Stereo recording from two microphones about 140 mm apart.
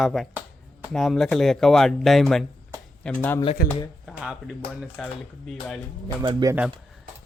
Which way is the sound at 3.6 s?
90° left.